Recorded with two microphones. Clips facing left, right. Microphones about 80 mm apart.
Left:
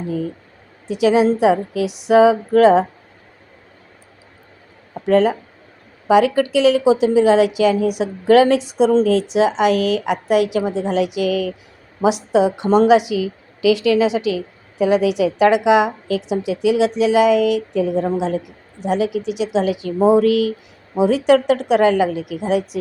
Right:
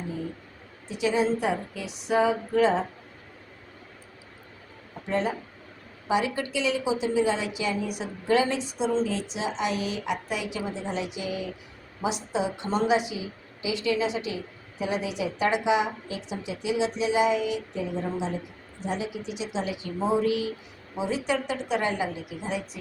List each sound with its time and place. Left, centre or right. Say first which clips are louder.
0.9 s a woman's voice: left 10 dB; left
5.0 s a woman's voice: left 13 dB; left
9.0 s a woman's voice: left 14 dB; left